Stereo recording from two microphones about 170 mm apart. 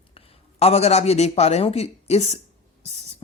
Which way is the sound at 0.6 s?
40° left (ahead or behind).